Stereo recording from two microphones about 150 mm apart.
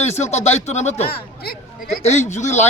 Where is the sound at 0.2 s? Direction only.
50° left (ahead or behind).